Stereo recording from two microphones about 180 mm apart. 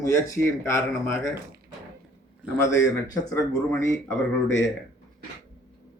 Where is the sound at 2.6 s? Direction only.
15° left (ahead or behind).